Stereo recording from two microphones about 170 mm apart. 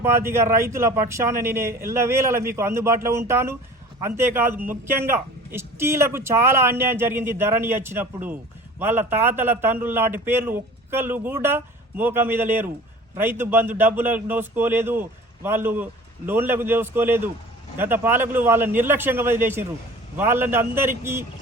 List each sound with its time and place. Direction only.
0.0 s a man's voice: 15° right (ahead or behind)